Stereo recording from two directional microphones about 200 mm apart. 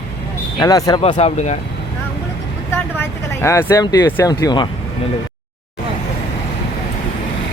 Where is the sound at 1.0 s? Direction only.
35° left (ahead or behind).